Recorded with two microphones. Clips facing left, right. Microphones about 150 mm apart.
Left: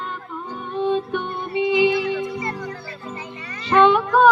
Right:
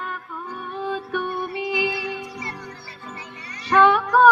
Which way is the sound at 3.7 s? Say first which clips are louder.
Left 2 dB; 20° left (ahead or behind).